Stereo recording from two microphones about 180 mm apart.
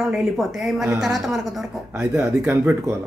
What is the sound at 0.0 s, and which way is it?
A woman's voice, centre (ahead or behind).